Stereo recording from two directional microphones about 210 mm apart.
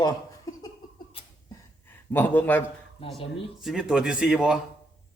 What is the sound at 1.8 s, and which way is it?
Speech, 10° left (ahead or behind).